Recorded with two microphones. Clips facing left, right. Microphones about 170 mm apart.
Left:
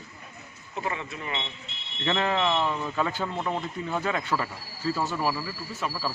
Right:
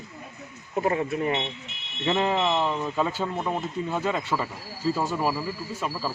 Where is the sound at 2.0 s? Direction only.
15° right (ahead or behind).